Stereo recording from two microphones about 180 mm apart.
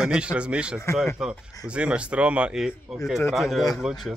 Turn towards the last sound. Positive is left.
turn(degrees=0)  # may be behind; listen again after turning